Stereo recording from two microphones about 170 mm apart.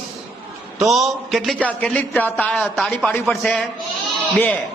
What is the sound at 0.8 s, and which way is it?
A man's voice, centre (ahead or behind).